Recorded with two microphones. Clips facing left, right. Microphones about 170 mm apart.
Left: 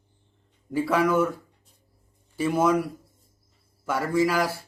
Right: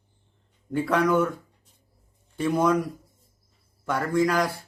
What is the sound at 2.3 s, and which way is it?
Speech, 5° left (ahead or behind).